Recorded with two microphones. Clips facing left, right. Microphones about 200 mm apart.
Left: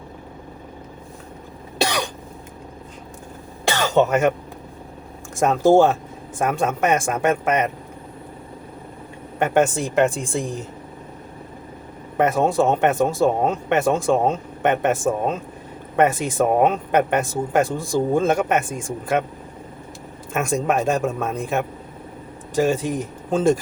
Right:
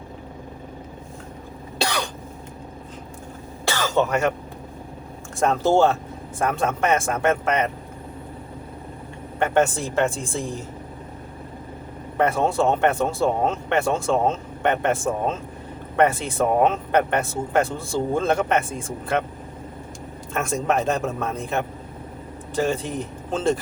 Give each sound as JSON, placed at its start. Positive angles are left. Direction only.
{"t": 1.8, "sound": "cough", "side_deg": 15}
{"t": 3.7, "sound": "cough", "side_deg": 20}
{"t": 5.4, "sound": "speech", "side_deg": 15}
{"t": 9.4, "sound": "speech", "side_deg": 15}
{"t": 12.1, "sound": "speech", "side_deg": 15}
{"t": 20.3, "sound": "speech", "side_deg": 15}